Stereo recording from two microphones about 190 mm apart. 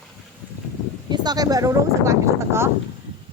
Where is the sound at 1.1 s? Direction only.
20° right (ahead or behind).